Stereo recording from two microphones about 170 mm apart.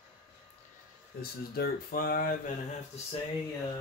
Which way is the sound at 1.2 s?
65° left (ahead or behind).